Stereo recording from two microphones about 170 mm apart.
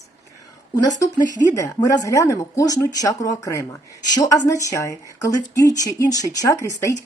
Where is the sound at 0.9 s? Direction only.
20° left (ahead or behind).